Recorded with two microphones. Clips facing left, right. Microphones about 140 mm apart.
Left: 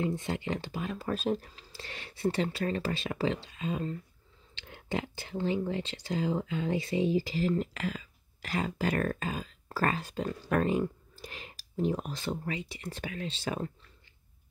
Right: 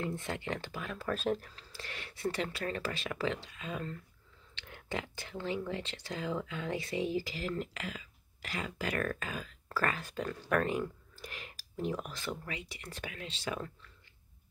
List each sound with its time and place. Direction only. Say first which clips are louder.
0.0 s speech: left 5 dB; 20° left (ahead or behind)